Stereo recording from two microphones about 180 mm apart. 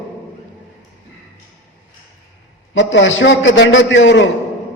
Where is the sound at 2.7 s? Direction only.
90° left.